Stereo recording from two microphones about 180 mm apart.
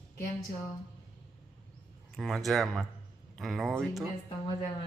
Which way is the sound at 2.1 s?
Centre (ahead or behind).